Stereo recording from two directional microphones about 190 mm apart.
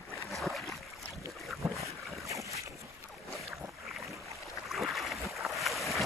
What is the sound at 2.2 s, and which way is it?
Boat, 15° right (ahead or behind).